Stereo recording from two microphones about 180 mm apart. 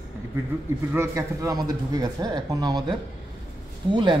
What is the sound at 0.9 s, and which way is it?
Speech, 20° right (ahead or behind).